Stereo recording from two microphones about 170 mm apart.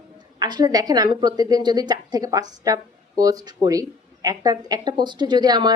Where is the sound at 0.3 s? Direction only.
25° right (ahead or behind).